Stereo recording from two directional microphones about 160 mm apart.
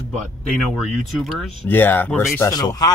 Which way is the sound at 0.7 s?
Centre (ahead or behind).